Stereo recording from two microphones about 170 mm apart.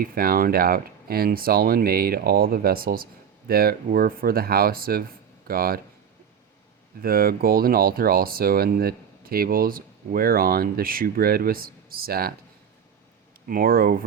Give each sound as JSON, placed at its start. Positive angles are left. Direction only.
{"t": 0.0, "sound": "speech", "side_deg": -60}
{"t": 7.0, "sound": "speech", "side_deg": -60}
{"t": 13.5, "sound": "speech", "side_deg": -60}